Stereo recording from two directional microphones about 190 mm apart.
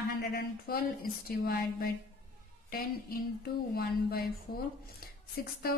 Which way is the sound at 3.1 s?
50° left (ahead or behind).